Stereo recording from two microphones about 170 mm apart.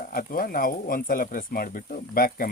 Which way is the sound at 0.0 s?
60° left (ahead or behind).